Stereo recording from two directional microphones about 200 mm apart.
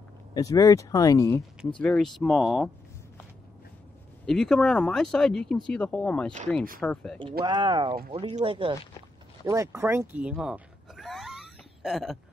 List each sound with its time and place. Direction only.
0.3 s speech: 15° left (ahead or behind)
1.8 s speech: 5° left (ahead or behind)
4.3 s speech: centre (ahead or behind)
7.4 s speech: 20° right (ahead or behind)
9.5 s a sound: 15° right (ahead or behind)